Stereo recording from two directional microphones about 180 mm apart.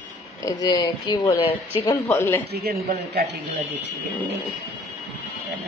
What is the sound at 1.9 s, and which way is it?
Speech, 15° left (ahead or behind).